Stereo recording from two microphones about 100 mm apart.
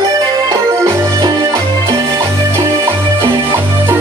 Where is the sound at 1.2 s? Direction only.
45° right (ahead or behind).